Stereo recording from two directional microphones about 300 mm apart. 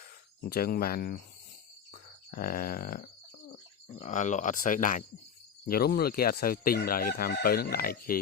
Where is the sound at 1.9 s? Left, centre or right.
Left.